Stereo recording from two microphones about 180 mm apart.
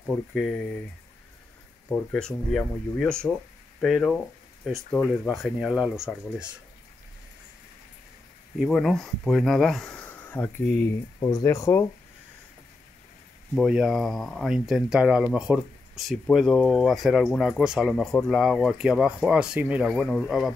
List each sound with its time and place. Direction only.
0.0 s speech: centre (ahead or behind)
2.0 s speech: 5° left (ahead or behind)
8.5 s speech: centre (ahead or behind)
11.1 s speech: 20° left (ahead or behind)
13.6 s speech: centre (ahead or behind)
19.9 s speech: 5° left (ahead or behind)